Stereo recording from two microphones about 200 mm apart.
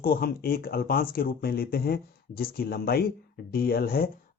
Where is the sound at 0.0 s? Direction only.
45° left (ahead or behind).